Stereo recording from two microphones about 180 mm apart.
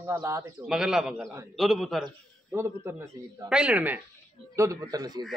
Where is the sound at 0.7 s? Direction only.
5° right (ahead or behind).